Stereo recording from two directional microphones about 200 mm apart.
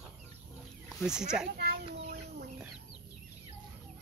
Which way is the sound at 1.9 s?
35° right (ahead or behind).